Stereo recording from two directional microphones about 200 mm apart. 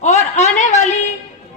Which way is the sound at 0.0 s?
35° left (ahead or behind).